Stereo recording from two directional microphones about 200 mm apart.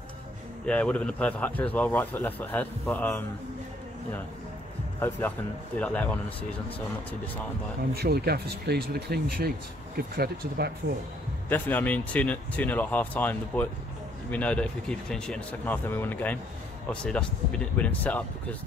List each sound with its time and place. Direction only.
0.7 s a man's voice: 5° left (ahead or behind)
5.8 s a man's voice: 5° left (ahead or behind)
7.9 s speech: 50° right (ahead or behind)
11.4 s a man's voice: 10° left (ahead or behind)